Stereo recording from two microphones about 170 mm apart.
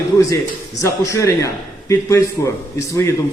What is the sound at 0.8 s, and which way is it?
A man's voice, 15° left (ahead or behind).